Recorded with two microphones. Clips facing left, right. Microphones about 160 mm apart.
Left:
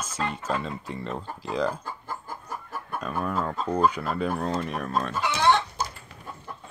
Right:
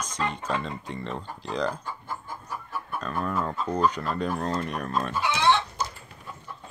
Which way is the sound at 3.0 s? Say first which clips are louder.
Left 1 dB; 10° left (ahead or behind).